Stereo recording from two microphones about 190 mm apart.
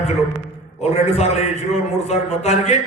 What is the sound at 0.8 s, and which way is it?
A man's voice, 35° left (ahead or behind).